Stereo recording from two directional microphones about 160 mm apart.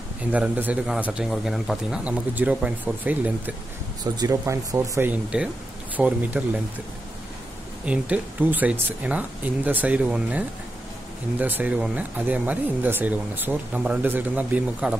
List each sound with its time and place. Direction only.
0.3 s speech: 10° right (ahead or behind)
4.0 s speech: 20° right (ahead or behind)
5.3 s speech: 5° right (ahead or behind)
7.8 s speech: 10° right (ahead or behind)